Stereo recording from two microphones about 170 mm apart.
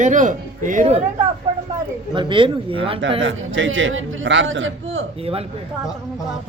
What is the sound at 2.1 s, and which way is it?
Speech, 30° right (ahead or behind).